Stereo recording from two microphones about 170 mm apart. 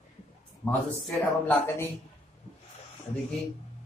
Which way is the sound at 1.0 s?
10° left (ahead or behind).